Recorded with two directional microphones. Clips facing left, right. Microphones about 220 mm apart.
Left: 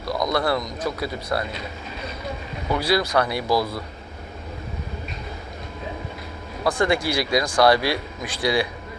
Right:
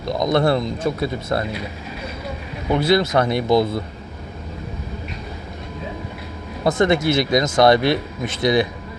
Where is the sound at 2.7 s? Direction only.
25° right (ahead or behind).